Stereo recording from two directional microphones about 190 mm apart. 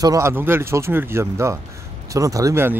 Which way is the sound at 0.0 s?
15° right (ahead or behind).